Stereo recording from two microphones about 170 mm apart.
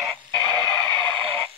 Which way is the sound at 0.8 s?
30° right (ahead or behind).